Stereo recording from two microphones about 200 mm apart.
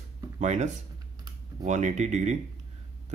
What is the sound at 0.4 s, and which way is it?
Speech, 35° right (ahead or behind).